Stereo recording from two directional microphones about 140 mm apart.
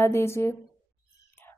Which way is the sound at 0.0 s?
20° left (ahead or behind).